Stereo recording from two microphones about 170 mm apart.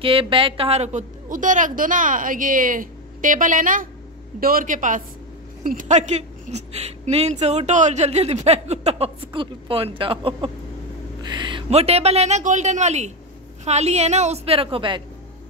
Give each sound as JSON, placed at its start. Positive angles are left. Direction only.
{"t": 0.0, "sound": "a woman's voice", "side_deg": -30}
{"t": 11.2, "sound": "a sound", "side_deg": -25}
{"t": 11.7, "sound": "a woman's voice", "side_deg": -40}